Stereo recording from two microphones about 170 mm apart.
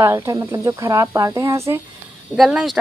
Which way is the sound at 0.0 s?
15° right (ahead or behind).